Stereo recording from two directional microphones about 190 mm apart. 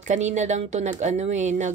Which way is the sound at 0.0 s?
40° right (ahead or behind).